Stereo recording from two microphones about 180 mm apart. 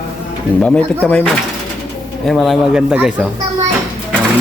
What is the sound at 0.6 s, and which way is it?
Speech, 5° left (ahead or behind).